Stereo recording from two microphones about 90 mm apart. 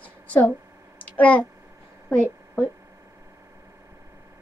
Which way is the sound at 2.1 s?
15° right (ahead or behind).